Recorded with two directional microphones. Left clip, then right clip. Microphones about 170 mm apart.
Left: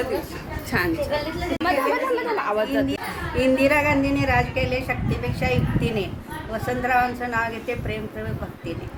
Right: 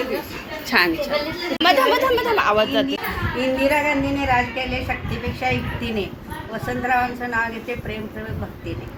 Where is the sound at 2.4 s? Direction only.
5° left (ahead or behind).